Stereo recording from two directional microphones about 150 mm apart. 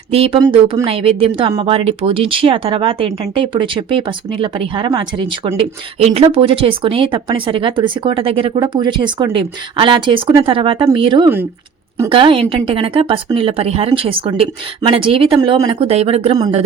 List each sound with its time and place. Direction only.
0.1 s speech: 40° right (ahead or behind)